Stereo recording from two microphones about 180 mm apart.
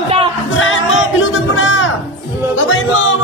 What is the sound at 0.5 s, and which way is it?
Music, 90° left.